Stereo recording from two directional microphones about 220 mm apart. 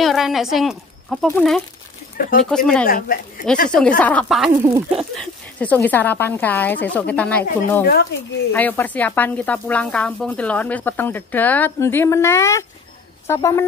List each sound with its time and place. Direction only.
0.0 s a woman's voice: centre (ahead or behind)
2.2 s speech: 45° left (ahead or behind)
2.5 s speech: 5° left (ahead or behind)
2.9 s speech: 40° left (ahead or behind)
4.0 s speech: 5° left (ahead or behind)
4.5 s speech: 15° right (ahead or behind)
4.9 s speech: 5° left (ahead or behind)